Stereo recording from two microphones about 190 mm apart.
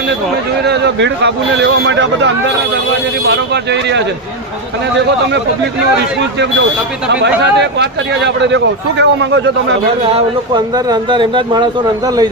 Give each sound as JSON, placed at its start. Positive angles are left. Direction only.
{"t": 0.6, "sound": "a man's voice", "side_deg": -65}
{"t": 3.2, "sound": "speech", "side_deg": -65}
{"t": 7.1, "sound": "a man's voice", "side_deg": -65}
{"t": 10.2, "sound": "speech", "side_deg": -20}